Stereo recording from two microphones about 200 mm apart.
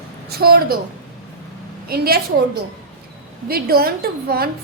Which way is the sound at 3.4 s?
50° right (ahead or behind).